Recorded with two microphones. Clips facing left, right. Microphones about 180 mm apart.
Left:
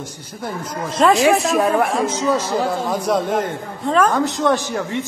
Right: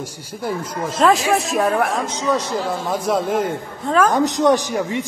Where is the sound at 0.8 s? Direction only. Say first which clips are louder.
Left 2 dB; centre (ahead or behind).